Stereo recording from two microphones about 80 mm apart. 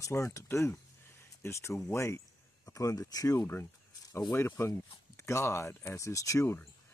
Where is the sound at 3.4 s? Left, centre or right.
Left.